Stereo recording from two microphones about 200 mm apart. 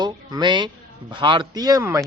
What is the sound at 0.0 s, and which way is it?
Speech, 20° right (ahead or behind).